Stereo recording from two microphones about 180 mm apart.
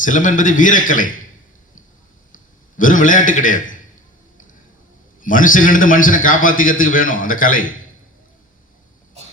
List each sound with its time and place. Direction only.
0.0 s a man's voice: 45° left (ahead or behind)
2.3 s a man's voice: 45° left (ahead or behind)
5.2 s a man's voice: 50° left (ahead or behind)